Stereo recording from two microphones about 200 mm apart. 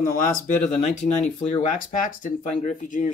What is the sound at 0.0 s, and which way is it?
Speech, 45° left (ahead or behind).